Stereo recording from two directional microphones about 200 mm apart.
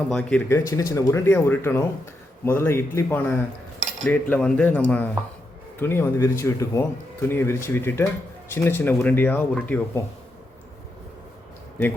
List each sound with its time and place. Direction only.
0.1 s speech: 5° left (ahead or behind)